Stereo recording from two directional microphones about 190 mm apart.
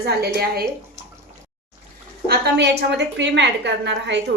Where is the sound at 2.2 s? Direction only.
60° right (ahead or behind).